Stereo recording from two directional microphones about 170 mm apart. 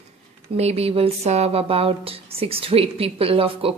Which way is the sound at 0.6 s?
35° right (ahead or behind).